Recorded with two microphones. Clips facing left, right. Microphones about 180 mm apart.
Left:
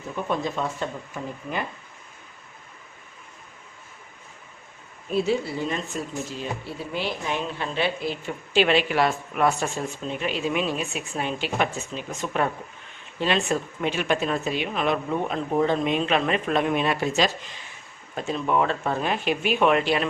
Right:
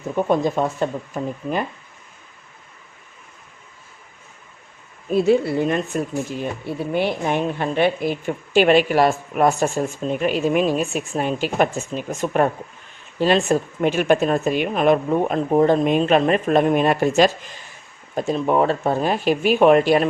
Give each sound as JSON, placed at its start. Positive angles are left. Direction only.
{"t": 0.3, "sound": "speech", "side_deg": -45}
{"t": 5.1, "sound": "speech", "side_deg": -55}
{"t": 18.1, "sound": "speech", "side_deg": -40}